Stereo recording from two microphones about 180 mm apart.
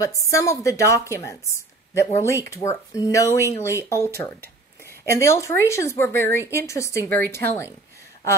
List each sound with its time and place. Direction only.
0.0 s a woman's voice: 15° left (ahead or behind)